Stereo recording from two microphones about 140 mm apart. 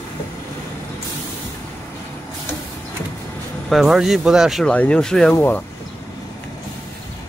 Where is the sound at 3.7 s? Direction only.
5° right (ahead or behind).